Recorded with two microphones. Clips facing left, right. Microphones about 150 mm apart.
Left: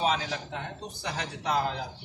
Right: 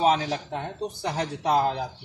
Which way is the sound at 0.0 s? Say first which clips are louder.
Right 6 dB; 45° right (ahead or behind).